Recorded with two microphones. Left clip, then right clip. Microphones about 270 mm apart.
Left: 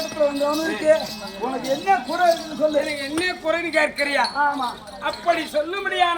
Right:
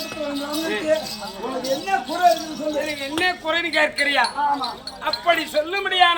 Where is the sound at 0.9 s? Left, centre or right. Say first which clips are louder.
Left 4 dB; centre.